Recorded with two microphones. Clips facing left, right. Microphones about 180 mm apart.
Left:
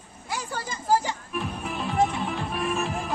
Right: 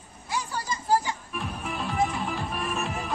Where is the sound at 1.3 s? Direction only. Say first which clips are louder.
Left 2 dB; centre (ahead or behind).